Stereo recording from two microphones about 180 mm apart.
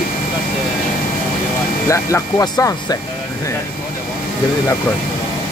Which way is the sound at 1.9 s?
15° left (ahead or behind).